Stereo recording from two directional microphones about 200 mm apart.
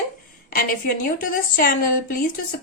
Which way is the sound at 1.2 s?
45° left (ahead or behind).